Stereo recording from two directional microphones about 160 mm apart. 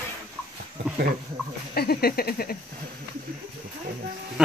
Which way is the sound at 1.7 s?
75° left (ahead or behind).